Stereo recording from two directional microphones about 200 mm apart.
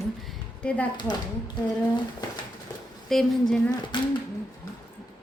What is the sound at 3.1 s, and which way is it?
Speech, centre (ahead or behind).